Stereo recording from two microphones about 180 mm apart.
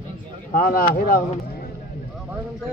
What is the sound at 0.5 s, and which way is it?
Speech, 55° left (ahead or behind).